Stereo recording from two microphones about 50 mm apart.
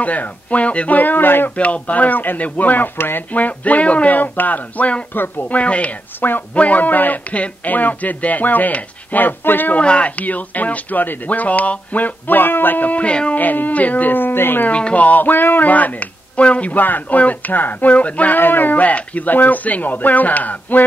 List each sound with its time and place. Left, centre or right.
0.0 s speech: left
1.6 s speech: left
3.0 s speech: left
3.3 s speech: left
9.8 s speech: left
13.4 s speech: left
14.7 s speech: left